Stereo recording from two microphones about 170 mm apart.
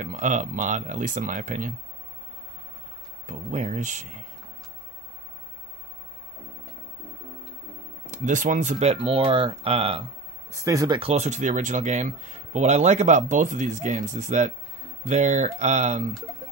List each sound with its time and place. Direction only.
0.0 s speech: 50° right (ahead or behind)
3.3 s speech: 45° right (ahead or behind)
8.1 s speech: 50° right (ahead or behind)
10.5 s speech: 20° right (ahead or behind)
11.0 s speech: 40° right (ahead or behind)